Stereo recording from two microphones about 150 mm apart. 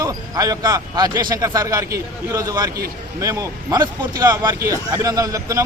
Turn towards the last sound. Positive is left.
turn(degrees=-20)  # may be behind; listen again after turning